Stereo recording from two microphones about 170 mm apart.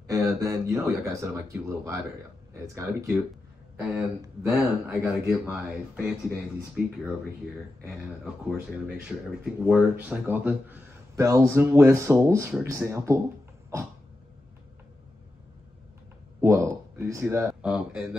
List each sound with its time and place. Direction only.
0.0 s speech: 20° right (ahead or behind)
8.2 s speech: 5° right (ahead or behind)
16.3 s speech: 15° right (ahead or behind)